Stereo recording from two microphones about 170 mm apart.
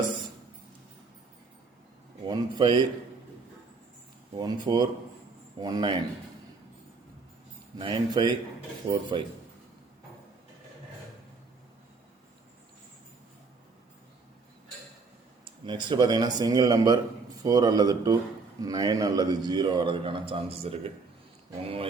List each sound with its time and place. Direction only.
2.2 s a man's voice: 25° right (ahead or behind)
4.4 s a man's voice: 25° right (ahead or behind)
7.8 s a man's voice: 30° right (ahead or behind)
15.6 s a man's voice: 25° right (ahead or behind)